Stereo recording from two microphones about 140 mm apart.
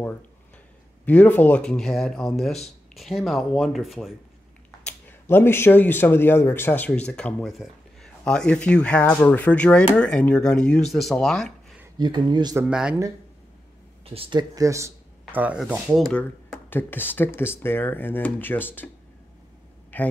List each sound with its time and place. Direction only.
1.0 s speech: 10° left (ahead or behind)
4.6 s speech: 10° left (ahead or behind)
7.5 s a sound: centre (ahead or behind)
8.2 s speech: 10° left (ahead or behind)
12.0 s speech: 35° right (ahead or behind)
12.5 s speech: 5° right (ahead or behind)
14.0 s speech: 40° right (ahead or behind)
14.5 s speech: 25° right (ahead or behind)
15.3 s speech: 10° right (ahead or behind)
16.7 s speech: 15° left (ahead or behind)
19.9 s a man's voice: 10° left (ahead or behind)